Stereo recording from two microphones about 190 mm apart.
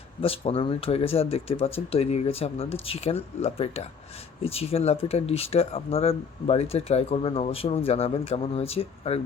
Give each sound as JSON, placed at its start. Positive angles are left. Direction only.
{"t": 0.2, "sound": "speech", "side_deg": 30}